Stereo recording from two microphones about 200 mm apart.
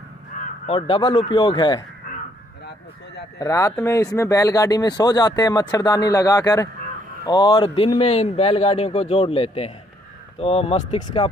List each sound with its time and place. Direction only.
0.7 s speech: 25° left (ahead or behind)
3.3 s speech: 15° left (ahead or behind)